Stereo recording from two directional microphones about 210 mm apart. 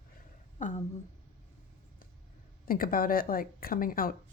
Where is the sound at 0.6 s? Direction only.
35° left (ahead or behind).